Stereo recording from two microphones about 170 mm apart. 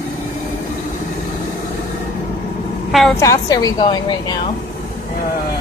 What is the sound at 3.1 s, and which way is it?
Speech, 20° left (ahead or behind).